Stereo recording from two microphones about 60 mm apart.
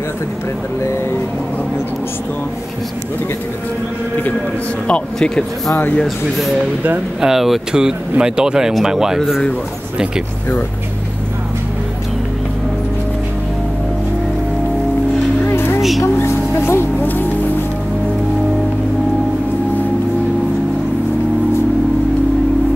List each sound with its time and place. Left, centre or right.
4.8 s speech: centre
7.2 s speech: centre
15.4 s music: left